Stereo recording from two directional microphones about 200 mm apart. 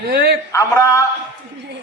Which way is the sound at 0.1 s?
50° right (ahead or behind).